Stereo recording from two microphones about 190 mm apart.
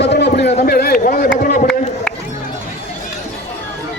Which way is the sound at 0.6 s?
55° left (ahead or behind).